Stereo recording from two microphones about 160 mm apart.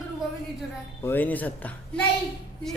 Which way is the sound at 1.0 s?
10° left (ahead or behind).